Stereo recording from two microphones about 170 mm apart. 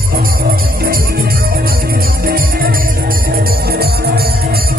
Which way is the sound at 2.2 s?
60° right (ahead or behind).